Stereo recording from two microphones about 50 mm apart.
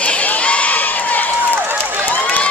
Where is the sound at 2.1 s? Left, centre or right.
Left.